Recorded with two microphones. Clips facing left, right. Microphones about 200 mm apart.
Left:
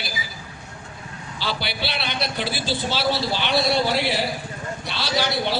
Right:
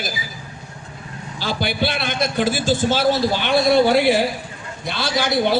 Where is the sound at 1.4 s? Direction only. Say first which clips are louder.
Right 6 dB; 45° right (ahead or behind).